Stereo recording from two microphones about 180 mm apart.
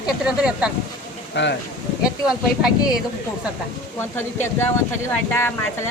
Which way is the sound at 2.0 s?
5° right (ahead or behind).